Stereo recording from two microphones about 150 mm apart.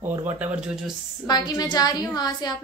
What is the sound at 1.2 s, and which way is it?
A woman's voice, 25° left (ahead or behind).